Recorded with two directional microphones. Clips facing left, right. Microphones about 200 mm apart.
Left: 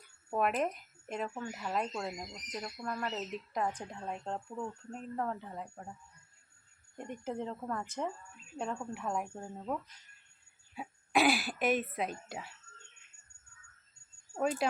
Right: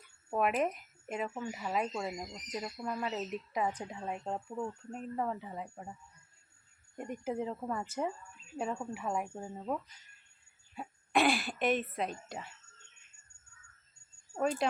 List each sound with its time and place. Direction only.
0.0 s a woman's voice: centre (ahead or behind)
14.3 s speech: 5° left (ahead or behind)